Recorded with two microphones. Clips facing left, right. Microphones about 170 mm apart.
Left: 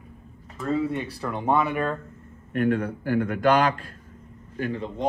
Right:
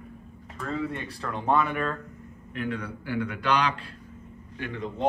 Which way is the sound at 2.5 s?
50° left (ahead or behind).